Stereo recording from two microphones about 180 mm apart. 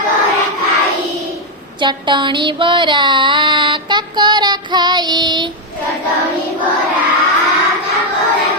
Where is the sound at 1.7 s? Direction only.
25° right (ahead or behind).